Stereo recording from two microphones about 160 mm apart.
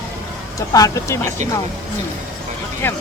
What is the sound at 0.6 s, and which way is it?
Speech, 20° left (ahead or behind).